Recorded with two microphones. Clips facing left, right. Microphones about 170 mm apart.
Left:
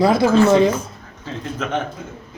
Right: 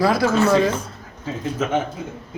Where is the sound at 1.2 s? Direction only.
5° right (ahead or behind).